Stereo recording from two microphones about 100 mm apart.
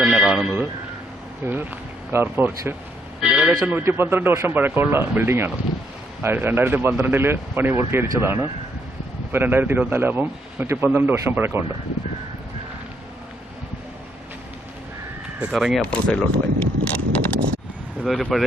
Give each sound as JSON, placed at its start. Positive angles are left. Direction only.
{"t": 0.0, "sound": "speech", "side_deg": -10}
{"t": 1.5, "sound": "speech", "side_deg": -20}
{"t": 3.2, "sound": "a sound", "side_deg": -5}
{"t": 3.5, "sound": "speech", "side_deg": -20}
{"t": 15.5, "sound": "speech", "side_deg": 0}
{"t": 15.8, "sound": "speech", "side_deg": 10}
{"t": 18.2, "sound": "speech", "side_deg": 0}